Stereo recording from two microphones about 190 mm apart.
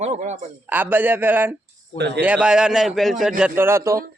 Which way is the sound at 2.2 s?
5° right (ahead or behind).